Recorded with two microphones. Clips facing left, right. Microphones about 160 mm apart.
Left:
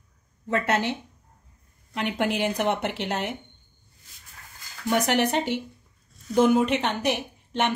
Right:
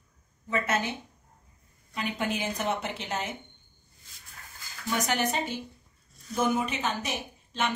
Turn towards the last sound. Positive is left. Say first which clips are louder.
# left 5 dB
turn(degrees=70)  # may be behind; listen again after turning